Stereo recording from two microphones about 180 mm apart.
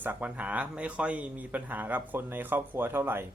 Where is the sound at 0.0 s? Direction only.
10° right (ahead or behind).